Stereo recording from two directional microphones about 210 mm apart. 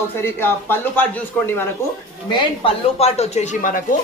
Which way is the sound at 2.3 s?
25° left (ahead or behind).